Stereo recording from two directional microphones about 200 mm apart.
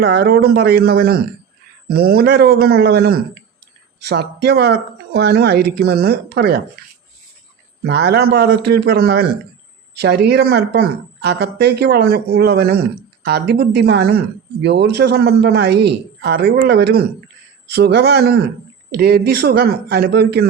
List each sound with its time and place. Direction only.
0.0 s speech: 55° right (ahead or behind)
7.9 s speech: 55° right (ahead or behind)